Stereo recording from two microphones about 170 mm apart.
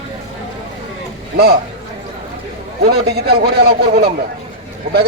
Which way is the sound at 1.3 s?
70° right (ahead or behind).